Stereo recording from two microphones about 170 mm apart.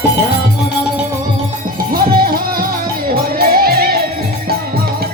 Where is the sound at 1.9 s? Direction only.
60° right (ahead or behind).